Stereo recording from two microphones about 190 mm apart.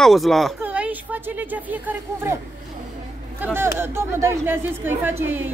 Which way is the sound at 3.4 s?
10° right (ahead or behind).